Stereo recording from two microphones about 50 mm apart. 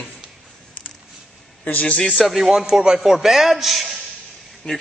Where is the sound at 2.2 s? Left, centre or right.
Centre.